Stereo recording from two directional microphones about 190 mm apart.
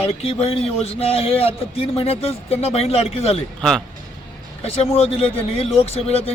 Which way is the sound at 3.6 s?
5° left (ahead or behind).